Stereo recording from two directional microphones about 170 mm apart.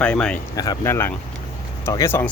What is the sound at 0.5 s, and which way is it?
Speech, 20° left (ahead or behind).